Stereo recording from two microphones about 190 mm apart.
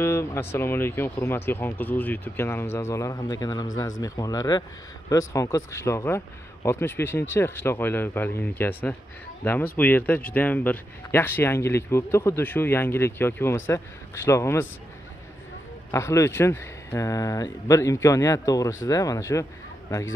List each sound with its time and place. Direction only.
0.0 s speech: 15° left (ahead or behind)
15.9 s speech: 15° left (ahead or behind)